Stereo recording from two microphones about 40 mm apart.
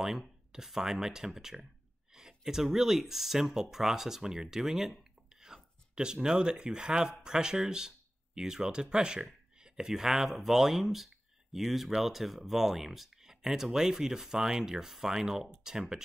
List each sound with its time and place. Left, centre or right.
0.5 s speech: centre